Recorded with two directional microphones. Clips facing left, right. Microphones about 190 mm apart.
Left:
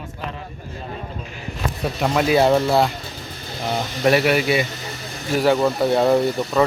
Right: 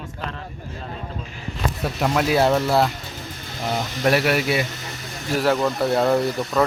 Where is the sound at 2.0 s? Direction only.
Centre (ahead or behind).